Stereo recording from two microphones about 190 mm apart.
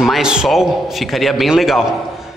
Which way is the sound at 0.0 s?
Centre (ahead or behind).